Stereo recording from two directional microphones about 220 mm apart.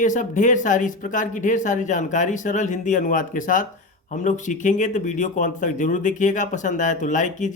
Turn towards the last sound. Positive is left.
turn(degrees=35)  # may be behind; listen again after turning